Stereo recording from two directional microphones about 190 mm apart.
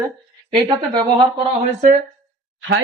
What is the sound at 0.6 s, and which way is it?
Speech, 20° right (ahead or behind).